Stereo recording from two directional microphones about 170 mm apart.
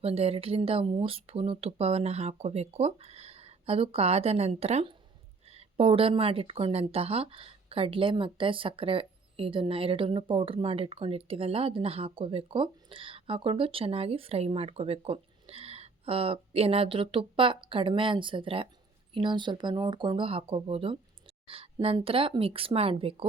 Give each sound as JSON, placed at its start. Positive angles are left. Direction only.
{"t": 0.0, "sound": "speech", "side_deg": -35}